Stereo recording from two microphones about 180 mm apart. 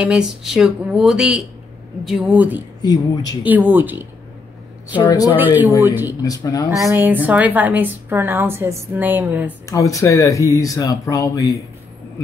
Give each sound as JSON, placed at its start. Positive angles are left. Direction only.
{"t": 0.0, "sound": "a woman's voice", "side_deg": -5}
{"t": 2.8, "sound": "speech", "side_deg": 20}
{"t": 3.4, "sound": "a woman's voice", "side_deg": -10}
{"t": 4.9, "sound": "speech", "side_deg": 20}
{"t": 5.3, "sound": "a woman's voice", "side_deg": -10}
{"t": 6.2, "sound": "speech", "side_deg": 20}
{"t": 6.7, "sound": "a woman's voice", "side_deg": -15}
{"t": 9.7, "sound": "speech", "side_deg": 20}